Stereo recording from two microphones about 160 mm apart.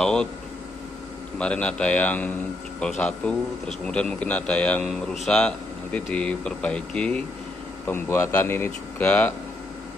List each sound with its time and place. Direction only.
0.0 s speech: 5° left (ahead or behind)
1.4 s speech: 5° left (ahead or behind)